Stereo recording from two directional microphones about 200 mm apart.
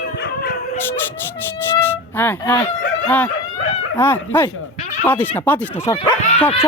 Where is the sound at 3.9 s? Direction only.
10° left (ahead or behind).